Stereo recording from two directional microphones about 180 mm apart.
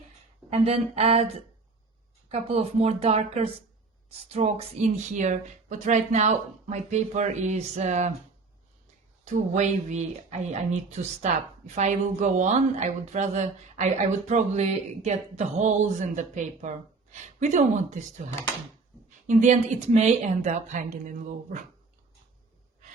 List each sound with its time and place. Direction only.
0.5 s speech: 35° right (ahead or behind)
9.2 s speech: 40° right (ahead or behind)
19.3 s speech: 40° right (ahead or behind)